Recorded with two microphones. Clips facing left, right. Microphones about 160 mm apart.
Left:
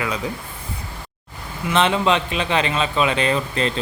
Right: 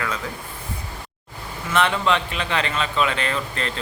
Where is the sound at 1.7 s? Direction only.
20° left (ahead or behind).